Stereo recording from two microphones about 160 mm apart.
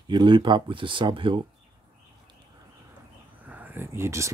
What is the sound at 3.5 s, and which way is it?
Speech, 10° right (ahead or behind).